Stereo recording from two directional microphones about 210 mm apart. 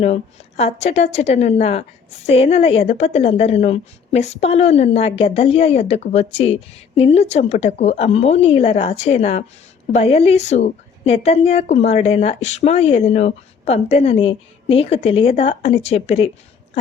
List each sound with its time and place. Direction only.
0.0 s a woman's voice: 30° left (ahead or behind)